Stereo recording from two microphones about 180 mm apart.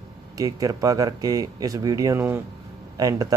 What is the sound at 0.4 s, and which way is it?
Speech, 20° right (ahead or behind).